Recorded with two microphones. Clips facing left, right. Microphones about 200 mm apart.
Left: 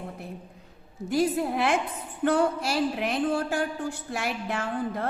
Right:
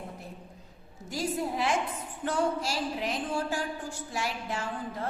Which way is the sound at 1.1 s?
60° left (ahead or behind).